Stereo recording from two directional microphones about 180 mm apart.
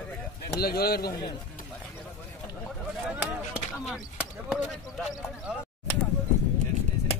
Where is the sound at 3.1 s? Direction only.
5° right (ahead or behind).